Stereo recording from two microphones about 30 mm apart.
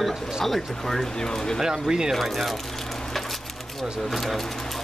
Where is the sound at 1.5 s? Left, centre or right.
Centre.